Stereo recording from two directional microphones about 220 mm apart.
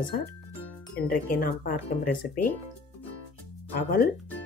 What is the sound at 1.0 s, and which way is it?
Speech, 45° left (ahead or behind).